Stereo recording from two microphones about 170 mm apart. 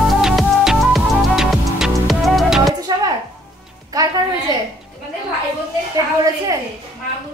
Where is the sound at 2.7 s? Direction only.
20° right (ahead or behind).